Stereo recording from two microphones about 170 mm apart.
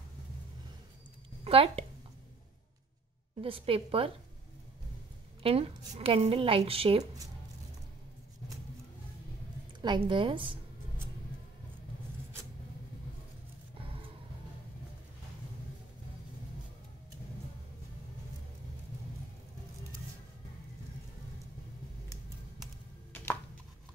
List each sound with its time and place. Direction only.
1.4 s a sound: 35° right (ahead or behind)
3.3 s a woman's voice: 30° right (ahead or behind)
5.4 s a woman's voice: 35° right (ahead or behind)
9.8 s a woman's voice: 30° right (ahead or behind)